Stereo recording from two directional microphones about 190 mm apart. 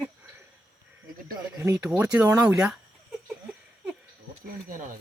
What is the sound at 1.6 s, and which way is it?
Speech, 5° right (ahead or behind).